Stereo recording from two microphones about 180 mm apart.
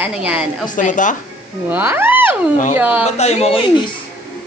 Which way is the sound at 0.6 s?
45° left (ahead or behind).